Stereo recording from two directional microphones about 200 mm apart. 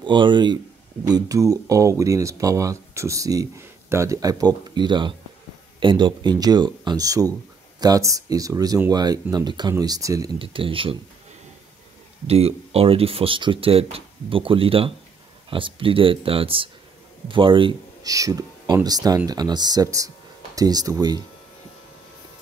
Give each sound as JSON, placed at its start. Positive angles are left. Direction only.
{"t": 0.0, "sound": "speech", "side_deg": -25}
{"t": 12.3, "sound": "speech", "side_deg": -30}